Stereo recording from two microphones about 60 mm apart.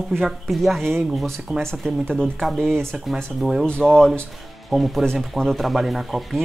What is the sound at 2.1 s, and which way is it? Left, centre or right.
Speech, centre.